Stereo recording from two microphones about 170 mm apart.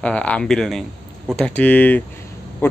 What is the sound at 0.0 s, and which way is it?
Speech, 5° left (ahead or behind).